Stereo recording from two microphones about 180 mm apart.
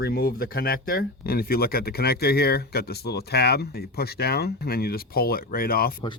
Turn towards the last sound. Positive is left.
turn(degrees=55)  # may be behind; listen again after turning